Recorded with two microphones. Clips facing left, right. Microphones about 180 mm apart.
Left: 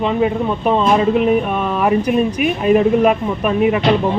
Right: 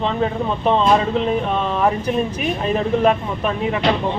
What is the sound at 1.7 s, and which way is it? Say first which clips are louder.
Speech: left 6 dB; 15° left (ahead or behind).